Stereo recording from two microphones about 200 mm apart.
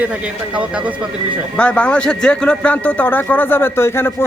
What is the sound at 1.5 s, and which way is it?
Speech, 5° left (ahead or behind).